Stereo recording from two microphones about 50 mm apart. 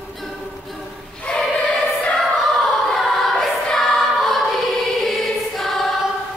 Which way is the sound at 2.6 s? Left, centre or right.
Centre.